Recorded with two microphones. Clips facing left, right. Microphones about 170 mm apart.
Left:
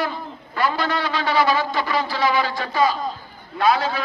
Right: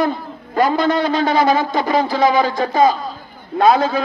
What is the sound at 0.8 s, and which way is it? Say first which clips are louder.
Speech: right 7 dB; 20° right (ahead or behind).